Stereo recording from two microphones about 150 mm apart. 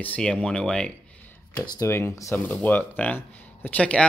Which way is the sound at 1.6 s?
20° left (ahead or behind).